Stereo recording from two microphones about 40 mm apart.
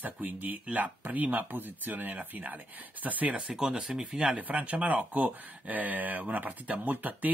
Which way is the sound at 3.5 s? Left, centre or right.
Centre.